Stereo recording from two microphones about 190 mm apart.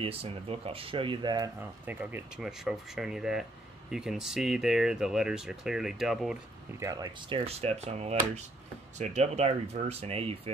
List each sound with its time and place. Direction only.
0.0 s speech: 30° right (ahead or behind)
1.6 s speech: 10° right (ahead or behind)
6.8 s speech: 20° right (ahead or behind)